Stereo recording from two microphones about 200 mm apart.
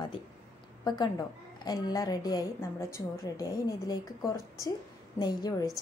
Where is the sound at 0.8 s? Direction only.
20° left (ahead or behind).